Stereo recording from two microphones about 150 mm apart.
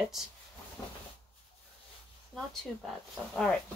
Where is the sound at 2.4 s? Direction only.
Centre (ahead or behind).